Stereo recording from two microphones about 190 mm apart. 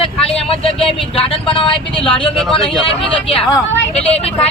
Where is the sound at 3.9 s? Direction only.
30° left (ahead or behind).